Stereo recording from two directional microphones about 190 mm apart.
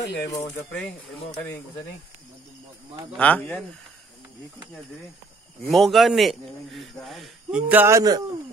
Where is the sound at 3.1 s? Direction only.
10° left (ahead or behind).